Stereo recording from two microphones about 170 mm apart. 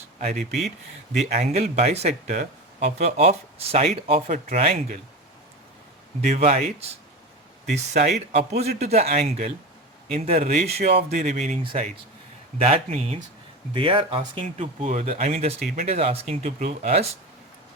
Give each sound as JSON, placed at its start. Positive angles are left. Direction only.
{"t": 0.2, "sound": "speech", "side_deg": -40}
{"t": 6.2, "sound": "speech", "side_deg": -40}
{"t": 12.6, "sound": "speech", "side_deg": -40}
{"t": 14.2, "sound": "speech", "side_deg": -40}